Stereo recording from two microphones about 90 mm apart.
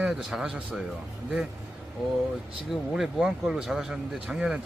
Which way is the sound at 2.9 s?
5° right (ahead or behind).